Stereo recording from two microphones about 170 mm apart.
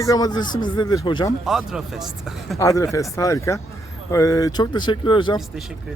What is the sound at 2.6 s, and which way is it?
Speech, 20° left (ahead or behind).